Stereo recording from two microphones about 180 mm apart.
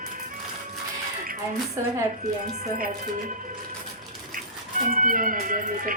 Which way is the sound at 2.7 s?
55° right (ahead or behind).